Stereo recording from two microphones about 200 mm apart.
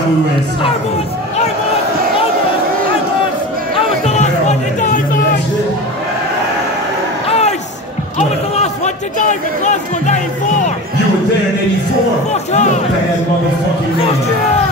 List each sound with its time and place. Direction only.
4.0 s music: 35° left (ahead or behind)
7.2 s a sound: 30° left (ahead or behind)
8.2 s music: 35° left (ahead or behind)
12.3 s speech: 35° left (ahead or behind)